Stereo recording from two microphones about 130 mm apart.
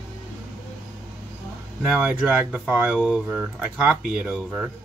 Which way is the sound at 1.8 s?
10° right (ahead or behind).